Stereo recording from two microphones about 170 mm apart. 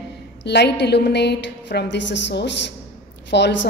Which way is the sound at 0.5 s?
80° left.